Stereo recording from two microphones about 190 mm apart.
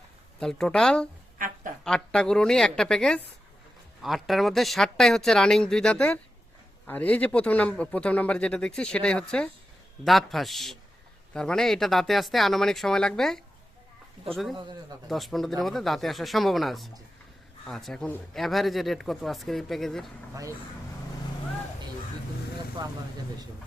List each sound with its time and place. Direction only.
0.3 s speech: 5° left (ahead or behind)
14.5 s speech: 25° right (ahead or behind)
15.1 s speech: centre (ahead or behind)